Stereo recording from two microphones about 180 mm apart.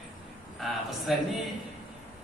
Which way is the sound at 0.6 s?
Centre (ahead or behind).